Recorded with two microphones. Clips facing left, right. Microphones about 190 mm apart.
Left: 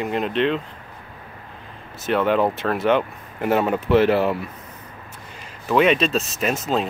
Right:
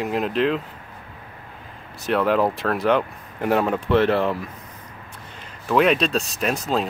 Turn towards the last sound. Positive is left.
turn(degrees=0)  # may be behind; listen again after turning